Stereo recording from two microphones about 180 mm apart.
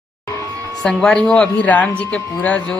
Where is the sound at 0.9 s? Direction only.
5° left (ahead or behind).